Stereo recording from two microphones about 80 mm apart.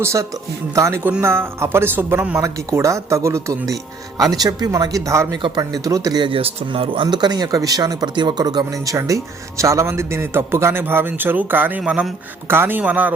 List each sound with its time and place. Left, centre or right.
0.0 s speech: right
2.7 s speech: right
4.2 s speech: right
5.3 s speech: right
6.1 s a man's voice: right; by 13.1 s centre